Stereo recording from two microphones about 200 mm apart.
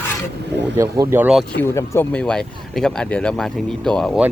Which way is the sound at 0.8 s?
15° right (ahead or behind).